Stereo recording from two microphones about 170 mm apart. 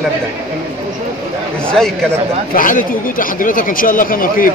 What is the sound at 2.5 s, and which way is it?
Speech, 55° left (ahead or behind).